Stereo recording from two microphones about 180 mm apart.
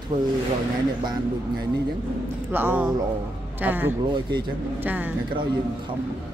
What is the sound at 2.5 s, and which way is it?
A woman's voice, 10° right (ahead or behind).